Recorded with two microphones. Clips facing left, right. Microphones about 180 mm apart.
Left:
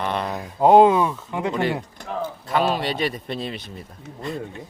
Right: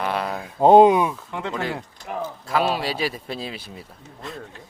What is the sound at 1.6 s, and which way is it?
Speech, centre (ahead or behind).